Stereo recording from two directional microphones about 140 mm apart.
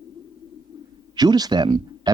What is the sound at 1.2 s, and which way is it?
Speech, 30° right (ahead or behind).